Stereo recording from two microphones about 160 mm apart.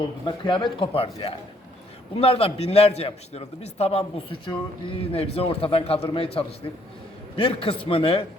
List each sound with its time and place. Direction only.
0.0 s a man's voice: 30° left (ahead or behind)